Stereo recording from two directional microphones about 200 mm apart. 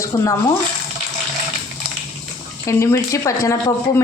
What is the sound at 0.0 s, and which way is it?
Speech, 15° left (ahead or behind).